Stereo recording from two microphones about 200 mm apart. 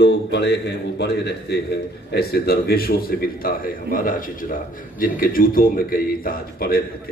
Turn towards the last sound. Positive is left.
turn(degrees=45)  # may be behind; listen again after turning